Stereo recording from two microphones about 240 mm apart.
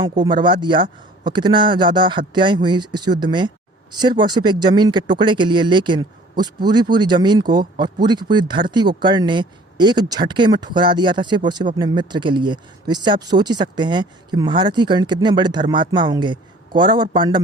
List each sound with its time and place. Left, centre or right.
0.0 s speech: centre